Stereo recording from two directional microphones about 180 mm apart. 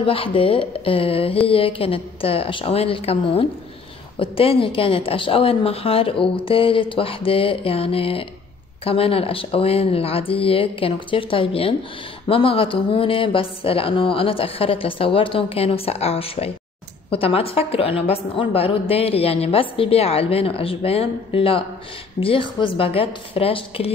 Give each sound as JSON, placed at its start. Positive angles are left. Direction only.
{"t": 0.0, "sound": "a woman's voice", "side_deg": 30}